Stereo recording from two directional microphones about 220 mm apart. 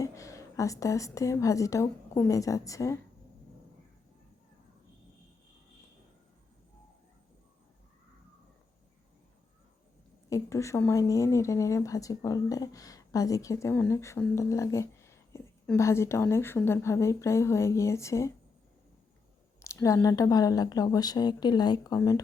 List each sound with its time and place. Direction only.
0.0 s a woman's voice: 15° left (ahead or behind)
10.2 s a woman's voice: 15° left (ahead or behind)
19.6 s a woman's voice: 15° left (ahead or behind)